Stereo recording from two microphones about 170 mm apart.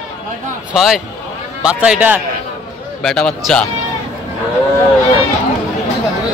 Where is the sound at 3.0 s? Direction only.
Centre (ahead or behind).